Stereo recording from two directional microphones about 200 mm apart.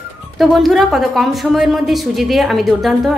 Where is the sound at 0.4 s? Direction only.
Centre (ahead or behind).